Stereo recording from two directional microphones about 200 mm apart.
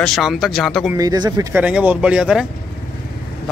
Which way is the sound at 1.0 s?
20° right (ahead or behind).